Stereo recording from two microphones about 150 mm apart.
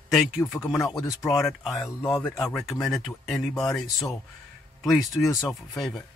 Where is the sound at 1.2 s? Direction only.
Centre (ahead or behind).